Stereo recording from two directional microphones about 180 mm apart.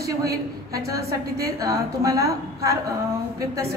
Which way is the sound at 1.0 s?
60° right (ahead or behind).